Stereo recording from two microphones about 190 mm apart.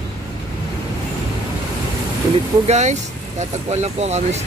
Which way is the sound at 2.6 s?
35° right (ahead or behind).